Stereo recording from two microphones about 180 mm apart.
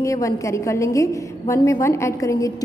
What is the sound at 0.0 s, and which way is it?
A woman's voice, 15° left (ahead or behind).